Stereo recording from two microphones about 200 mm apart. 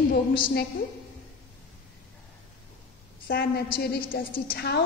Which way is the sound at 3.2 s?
50° left (ahead or behind).